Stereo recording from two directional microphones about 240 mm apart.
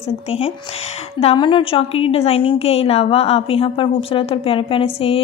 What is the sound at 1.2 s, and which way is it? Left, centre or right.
A woman's voice, left.